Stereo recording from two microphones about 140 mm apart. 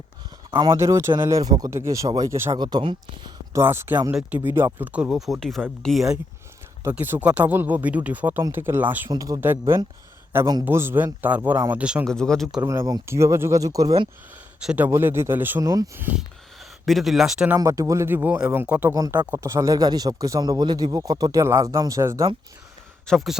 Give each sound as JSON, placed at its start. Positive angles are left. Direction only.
{"t": 0.8, "sound": "speech", "side_deg": -20}
{"t": 2.6, "sound": "speech", "side_deg": -30}
{"t": 3.6, "sound": "speech", "side_deg": -15}
{"t": 6.9, "sound": "speech", "side_deg": -15}
{"t": 9.0, "sound": "speech", "side_deg": -25}
{"t": 12.0, "sound": "speech", "side_deg": 5}
{"t": 12.5, "sound": "speech", "side_deg": -20}
{"t": 14.6, "sound": "speech", "side_deg": -5}
{"t": 14.8, "sound": "speech", "side_deg": -15}
{"t": 16.8, "sound": "speech", "side_deg": 0}
{"t": 17.6, "sound": "speech", "side_deg": -25}
{"t": 23.0, "sound": "speech", "side_deg": 0}